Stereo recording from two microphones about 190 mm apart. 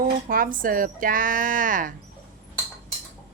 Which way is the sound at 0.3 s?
45° right (ahead or behind).